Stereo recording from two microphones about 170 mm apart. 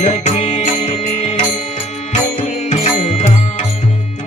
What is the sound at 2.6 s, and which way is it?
Music, 40° left (ahead or behind).